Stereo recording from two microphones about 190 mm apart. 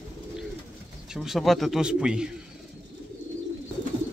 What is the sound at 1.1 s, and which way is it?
A man's voice, centre (ahead or behind).